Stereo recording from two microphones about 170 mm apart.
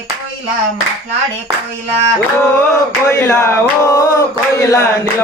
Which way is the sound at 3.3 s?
15° left (ahead or behind).